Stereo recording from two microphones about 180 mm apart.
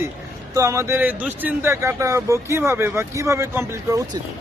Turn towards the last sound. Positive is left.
turn(degrees=-20)  # may be behind; listen again after turning